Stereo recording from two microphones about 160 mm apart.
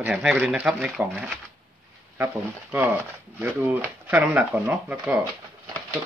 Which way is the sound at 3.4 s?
15° right (ahead or behind).